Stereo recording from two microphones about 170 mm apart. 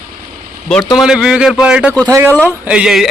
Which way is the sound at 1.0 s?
5° right (ahead or behind).